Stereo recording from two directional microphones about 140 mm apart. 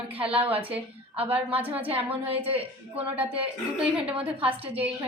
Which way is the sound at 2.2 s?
45° right (ahead or behind).